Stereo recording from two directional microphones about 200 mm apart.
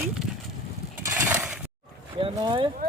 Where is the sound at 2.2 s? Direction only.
25° right (ahead or behind).